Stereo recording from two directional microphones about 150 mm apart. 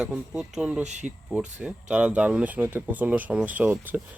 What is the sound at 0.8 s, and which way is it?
Speech, 55° right (ahead or behind).